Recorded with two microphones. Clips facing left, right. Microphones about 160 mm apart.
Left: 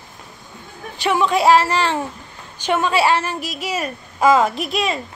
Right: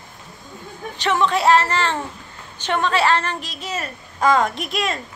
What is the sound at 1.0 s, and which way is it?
A woman's voice, 10° left (ahead or behind).